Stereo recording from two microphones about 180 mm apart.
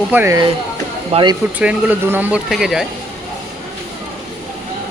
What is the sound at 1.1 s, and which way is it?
Speech, 35° right (ahead or behind).